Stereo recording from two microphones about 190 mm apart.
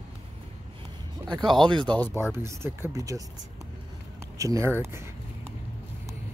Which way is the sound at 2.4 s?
15° right (ahead or behind).